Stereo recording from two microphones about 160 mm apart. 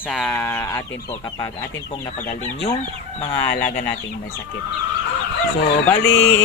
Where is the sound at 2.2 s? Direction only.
40° left (ahead or behind).